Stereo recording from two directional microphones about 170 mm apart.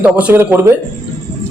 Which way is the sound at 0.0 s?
10° right (ahead or behind).